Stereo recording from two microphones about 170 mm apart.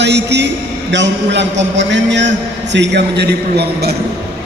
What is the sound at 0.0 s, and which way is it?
A man's voice, 90° right.